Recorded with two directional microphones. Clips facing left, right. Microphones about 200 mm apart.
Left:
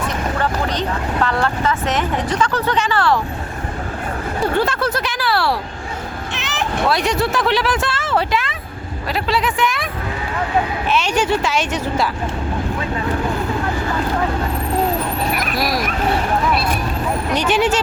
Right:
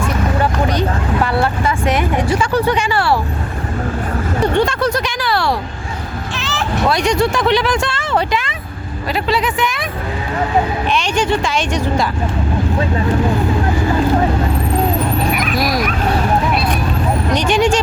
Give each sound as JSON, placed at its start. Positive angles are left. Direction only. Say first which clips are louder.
{"t": 0.3, "sound": "vehicle", "louder": "right 4 dB", "side_deg": -10}
{"t": 4.5, "sound": "speech", "louder": "right 3 dB", "side_deg": 5}
{"t": 6.3, "sound": "vehicle", "louder": "right 2 dB", "side_deg": 20}
{"t": 6.8, "sound": "speech", "louder": "right 4 dB", "side_deg": 0}
{"t": 10.8, "sound": "speech", "louder": "right 1 dB", "side_deg": 5}
{"t": 15.4, "sound": "dog", "louder": "right 3 dB", "side_deg": 0}
{"t": 17.3, "sound": "speech", "louder": "right 2 dB", "side_deg": 5}